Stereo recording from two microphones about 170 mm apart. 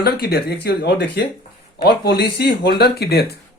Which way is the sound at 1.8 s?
70° left (ahead or behind).